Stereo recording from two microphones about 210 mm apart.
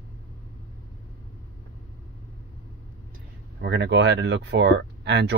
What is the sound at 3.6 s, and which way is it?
Speech, 55° right (ahead or behind).